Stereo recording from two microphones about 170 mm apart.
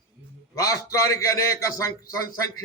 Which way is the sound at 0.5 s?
20° left (ahead or behind).